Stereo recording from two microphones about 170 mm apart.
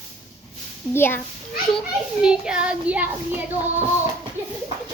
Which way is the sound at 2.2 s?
5° right (ahead or behind).